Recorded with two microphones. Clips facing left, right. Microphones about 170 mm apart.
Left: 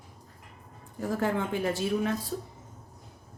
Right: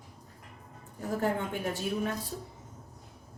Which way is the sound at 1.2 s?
90° left.